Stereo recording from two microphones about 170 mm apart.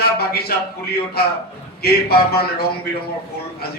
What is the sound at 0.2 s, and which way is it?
Speech, 65° left (ahead or behind).